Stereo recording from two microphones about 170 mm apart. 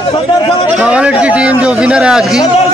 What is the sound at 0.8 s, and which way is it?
A man's voice, 5° right (ahead or behind).